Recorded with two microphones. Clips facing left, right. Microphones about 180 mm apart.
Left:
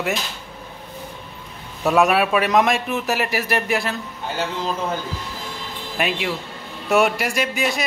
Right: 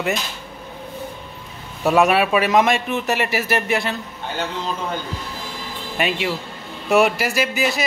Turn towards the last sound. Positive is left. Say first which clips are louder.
# right 1 dB
turn(degrees=0)  # may be behind; listen again after turning